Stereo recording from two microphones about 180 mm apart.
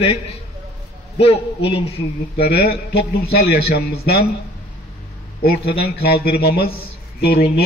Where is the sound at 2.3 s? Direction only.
60° left (ahead or behind).